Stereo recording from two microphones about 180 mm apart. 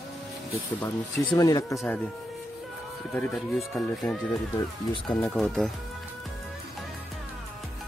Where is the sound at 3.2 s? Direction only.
Centre (ahead or behind).